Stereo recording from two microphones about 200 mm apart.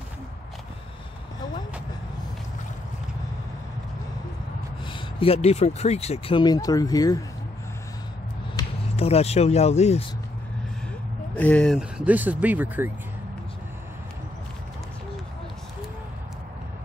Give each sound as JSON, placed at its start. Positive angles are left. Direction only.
{"t": 4.8, "sound": "speech", "side_deg": 30}
{"t": 8.9, "sound": "speech", "side_deg": 30}
{"t": 11.3, "sound": "speech", "side_deg": 5}